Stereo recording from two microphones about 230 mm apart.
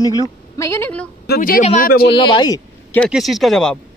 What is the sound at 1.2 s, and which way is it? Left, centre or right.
Speech, left.